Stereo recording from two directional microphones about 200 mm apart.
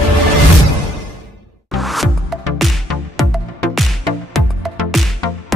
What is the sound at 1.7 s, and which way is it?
Music, centre (ahead or behind).